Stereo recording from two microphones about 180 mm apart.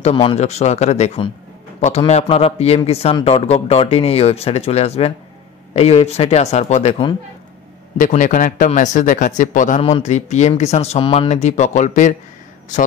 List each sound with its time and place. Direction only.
0.1 s a man's voice: 30° left (ahead or behind)
8.0 s a man's voice: 45° left (ahead or behind)